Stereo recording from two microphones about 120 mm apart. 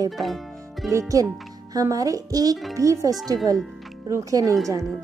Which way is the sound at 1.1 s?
30° right (ahead or behind).